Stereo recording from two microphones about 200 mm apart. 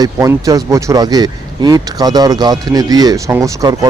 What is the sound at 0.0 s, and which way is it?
Speech, 15° right (ahead or behind).